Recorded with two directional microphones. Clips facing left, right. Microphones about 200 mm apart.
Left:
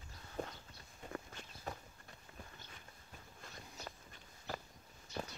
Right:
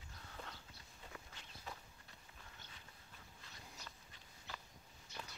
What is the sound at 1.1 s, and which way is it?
Walk, 50° left (ahead or behind).